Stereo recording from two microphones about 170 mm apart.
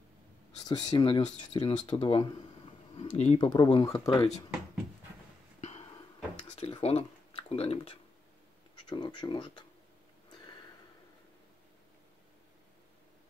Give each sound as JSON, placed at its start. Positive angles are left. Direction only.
{"t": 0.7, "sound": "speech", "side_deg": 25}
{"t": 3.0, "sound": "speech", "side_deg": 40}
{"t": 3.3, "sound": "speech", "side_deg": 25}
{"t": 5.6, "sound": "a sound", "side_deg": 40}
{"t": 8.8, "sound": "speech", "side_deg": 25}